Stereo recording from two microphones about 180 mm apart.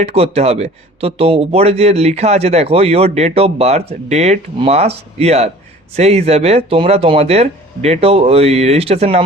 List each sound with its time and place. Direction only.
0.0 s a man's voice: 35° right (ahead or behind)